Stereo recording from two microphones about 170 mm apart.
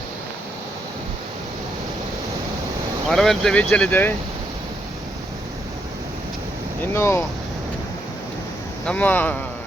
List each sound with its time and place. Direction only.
3.1 s speech: centre (ahead or behind)
6.9 s speech: 15° left (ahead or behind)
8.9 s speech: 10° left (ahead or behind)